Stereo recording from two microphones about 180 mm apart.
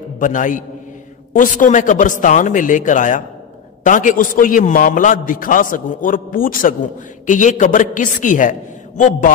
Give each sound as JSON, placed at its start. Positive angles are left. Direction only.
{"t": 0.2, "sound": "a man's voice", "side_deg": 45}